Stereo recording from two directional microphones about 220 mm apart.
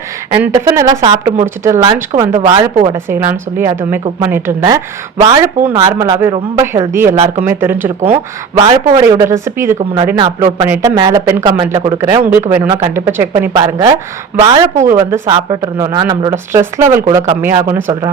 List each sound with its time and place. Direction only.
0.4 s speech: 15° right (ahead or behind)
8.6 s speech: 20° right (ahead or behind)
9.7 s speech: 25° right (ahead or behind)